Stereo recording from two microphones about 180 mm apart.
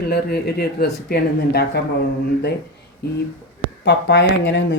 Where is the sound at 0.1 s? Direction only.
60° left (ahead or behind).